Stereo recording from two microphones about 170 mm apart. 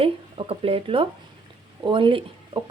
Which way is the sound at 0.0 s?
35° right (ahead or behind).